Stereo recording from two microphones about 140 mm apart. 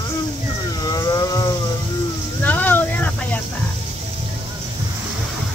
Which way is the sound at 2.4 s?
15° left (ahead or behind).